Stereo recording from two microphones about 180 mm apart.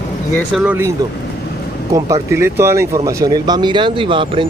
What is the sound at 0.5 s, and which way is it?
Speech, 10° right (ahead or behind).